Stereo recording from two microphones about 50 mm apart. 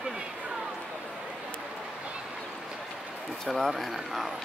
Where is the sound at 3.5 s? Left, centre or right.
Centre.